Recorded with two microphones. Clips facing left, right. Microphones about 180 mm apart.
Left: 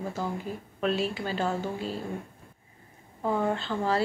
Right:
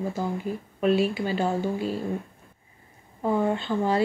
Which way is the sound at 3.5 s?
10° right (ahead or behind).